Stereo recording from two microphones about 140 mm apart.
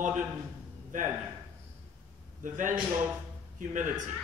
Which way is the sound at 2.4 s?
70° right (ahead or behind).